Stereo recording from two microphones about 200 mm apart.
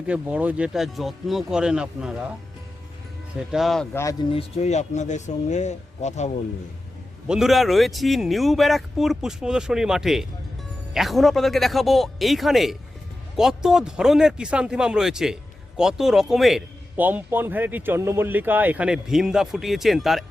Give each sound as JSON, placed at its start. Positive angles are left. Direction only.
{"t": 0.1, "sound": "a man's voice", "side_deg": -5}
{"t": 3.5, "sound": "a man's voice", "side_deg": 0}
{"t": 3.9, "sound": "speech", "side_deg": 15}
{"t": 4.3, "sound": "speech", "side_deg": 30}
{"t": 7.3, "sound": "a man's voice", "side_deg": 0}